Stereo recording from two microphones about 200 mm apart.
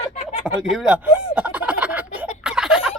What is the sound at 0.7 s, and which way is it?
Speech, 5° right (ahead or behind).